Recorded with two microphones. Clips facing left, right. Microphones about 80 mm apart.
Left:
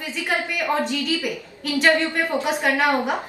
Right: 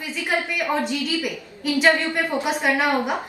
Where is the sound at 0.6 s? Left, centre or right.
Centre.